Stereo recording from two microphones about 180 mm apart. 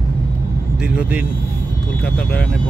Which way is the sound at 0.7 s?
5° right (ahead or behind).